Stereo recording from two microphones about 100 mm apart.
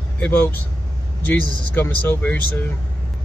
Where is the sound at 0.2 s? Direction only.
15° left (ahead or behind).